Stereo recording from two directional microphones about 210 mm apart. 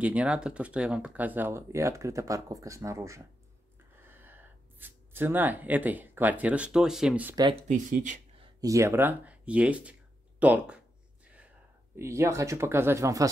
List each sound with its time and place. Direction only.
0.0 s speech: 5° right (ahead or behind)
7.3 s speech: 20° right (ahead or behind)
7.6 s speech: 35° right (ahead or behind)
8.5 s speech: 15° right (ahead or behind)
11.2 s whispering: 5° right (ahead or behind)
12.0 s speech: 15° right (ahead or behind)